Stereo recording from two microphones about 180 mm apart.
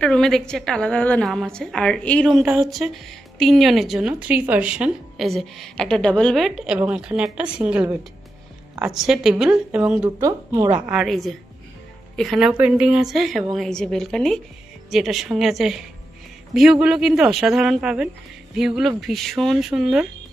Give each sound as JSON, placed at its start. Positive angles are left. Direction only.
{"t": 0.0, "sound": "a woman's voice", "side_deg": 5}
{"t": 10.2, "sound": "a woman's voice", "side_deg": -20}
{"t": 10.9, "sound": "a woman's voice", "side_deg": 0}